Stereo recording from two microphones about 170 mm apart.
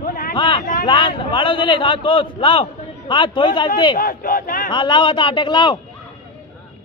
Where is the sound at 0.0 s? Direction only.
60° left (ahead or behind).